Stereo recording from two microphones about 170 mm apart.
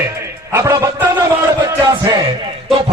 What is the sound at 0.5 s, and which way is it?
Speech, 15° right (ahead or behind).